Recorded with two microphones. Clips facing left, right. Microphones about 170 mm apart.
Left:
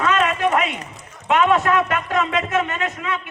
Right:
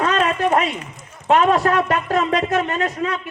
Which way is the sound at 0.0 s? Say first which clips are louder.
Right 1 dB; 35° right (ahead or behind).